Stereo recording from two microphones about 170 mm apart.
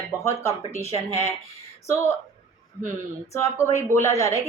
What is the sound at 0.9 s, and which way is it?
Speech, 40° right (ahead or behind).